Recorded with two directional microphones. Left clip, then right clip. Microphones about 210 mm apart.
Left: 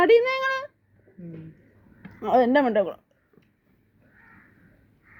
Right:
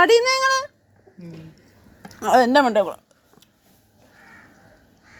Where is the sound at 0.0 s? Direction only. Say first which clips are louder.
Right 3 dB; centre (ahead or behind).